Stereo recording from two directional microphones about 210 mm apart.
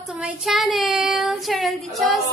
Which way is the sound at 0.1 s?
Centre (ahead or behind).